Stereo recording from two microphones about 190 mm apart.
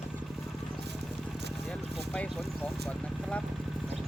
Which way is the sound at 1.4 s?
60° right (ahead or behind).